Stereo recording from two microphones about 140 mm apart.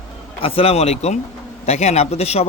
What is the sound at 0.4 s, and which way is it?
Speech, 45° left (ahead or behind).